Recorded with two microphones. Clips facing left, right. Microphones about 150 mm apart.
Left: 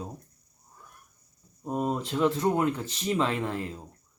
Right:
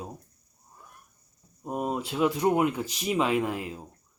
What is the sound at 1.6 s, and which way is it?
Speech, 10° right (ahead or behind).